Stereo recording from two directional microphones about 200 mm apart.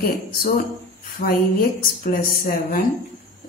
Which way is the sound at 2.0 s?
45° left (ahead or behind).